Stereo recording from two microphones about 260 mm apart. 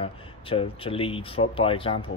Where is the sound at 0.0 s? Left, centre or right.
Left.